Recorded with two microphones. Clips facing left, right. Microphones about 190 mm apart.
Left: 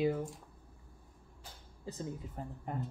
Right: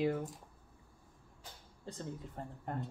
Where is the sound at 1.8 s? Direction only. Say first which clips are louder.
Left 2 dB; 5° left (ahead or behind).